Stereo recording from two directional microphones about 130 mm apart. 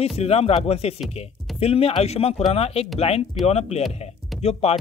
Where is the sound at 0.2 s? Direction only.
50° left (ahead or behind).